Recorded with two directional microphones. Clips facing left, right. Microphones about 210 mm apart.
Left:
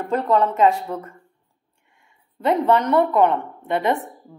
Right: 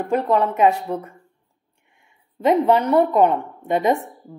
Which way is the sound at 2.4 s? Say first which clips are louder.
Right 2 dB; 15° right (ahead or behind).